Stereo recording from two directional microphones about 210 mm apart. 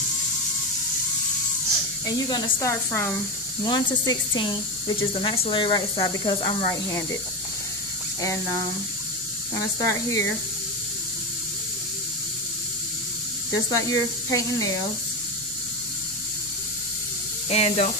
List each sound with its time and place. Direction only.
2.2 s speech: 20° left (ahead or behind)
2.9 s speech: 5° left (ahead or behind)
3.6 s speech: 20° left (ahead or behind)
9.6 s speech: 15° left (ahead or behind)
13.6 s speech: 15° left (ahead or behind)
17.5 s speech: 30° left (ahead or behind)